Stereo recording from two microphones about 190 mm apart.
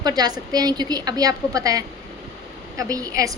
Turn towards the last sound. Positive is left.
turn(degrees=-20)  # may be behind; listen again after turning